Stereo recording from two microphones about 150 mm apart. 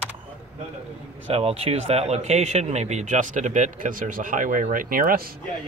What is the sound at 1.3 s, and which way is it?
Speech, 40° right (ahead or behind).